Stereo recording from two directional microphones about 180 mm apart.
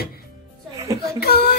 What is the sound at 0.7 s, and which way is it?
Speech, 20° right (ahead or behind).